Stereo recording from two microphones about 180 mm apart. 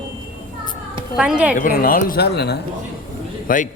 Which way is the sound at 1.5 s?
50° left (ahead or behind).